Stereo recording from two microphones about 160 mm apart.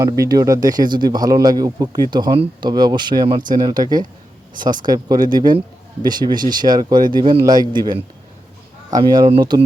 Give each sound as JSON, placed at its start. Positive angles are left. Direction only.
{"t": 0.0, "sound": "speech", "side_deg": -20}